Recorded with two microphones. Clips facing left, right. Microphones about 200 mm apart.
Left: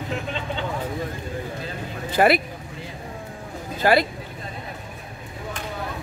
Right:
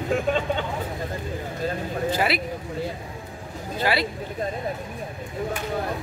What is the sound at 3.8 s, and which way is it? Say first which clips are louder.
Speech: left 6 dB; 45° left (ahead or behind).